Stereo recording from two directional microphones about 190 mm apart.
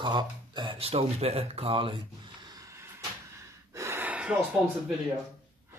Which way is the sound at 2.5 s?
15° right (ahead or behind).